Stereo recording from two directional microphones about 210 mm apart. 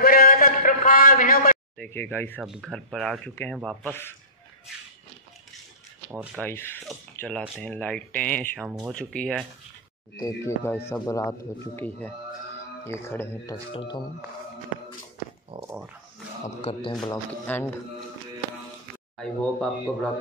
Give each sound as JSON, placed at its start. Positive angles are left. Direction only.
{"t": 0.0, "sound": "a sound", "side_deg": 45}
{"t": 1.8, "sound": "speech", "side_deg": 10}
{"t": 2.4, "sound": "speech", "side_deg": 0}
{"t": 6.3, "sound": "speech", "side_deg": 10}
{"t": 13.7, "sound": "speech", "side_deg": 25}
{"t": 15.5, "sound": "a sound", "side_deg": -25}
{"t": 16.4, "sound": "speech", "side_deg": 25}
{"t": 17.1, "sound": "speech", "side_deg": 10}
{"t": 19.1, "sound": "speech", "side_deg": 5}